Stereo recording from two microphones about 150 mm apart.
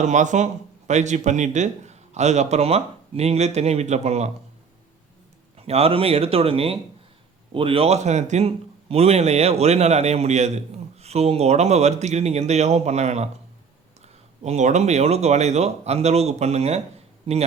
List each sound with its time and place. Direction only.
0.0 s speech: 55° right (ahead or behind)
5.5 s speech: 40° right (ahead or behind)
14.4 s speech: 50° right (ahead or behind)